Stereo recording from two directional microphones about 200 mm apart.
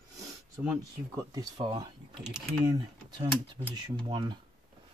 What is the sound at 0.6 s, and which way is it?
Speech, 15° right (ahead or behind).